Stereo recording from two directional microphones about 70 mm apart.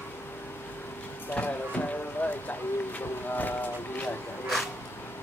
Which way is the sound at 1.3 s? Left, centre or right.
Left.